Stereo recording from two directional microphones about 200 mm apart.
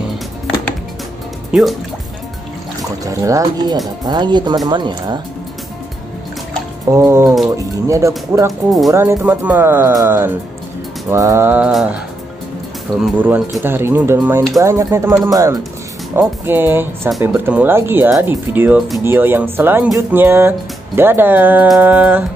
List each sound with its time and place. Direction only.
1.5 s speech: centre (ahead or behind)
3.1 s speech: 15° right (ahead or behind)
6.9 s speech: 15° right (ahead or behind)
8.9 s speech: 10° right (ahead or behind)
13.0 s speech: 5° right (ahead or behind)